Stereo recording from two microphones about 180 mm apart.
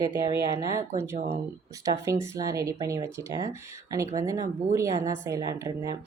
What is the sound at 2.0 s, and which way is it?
Speech, 15° right (ahead or behind).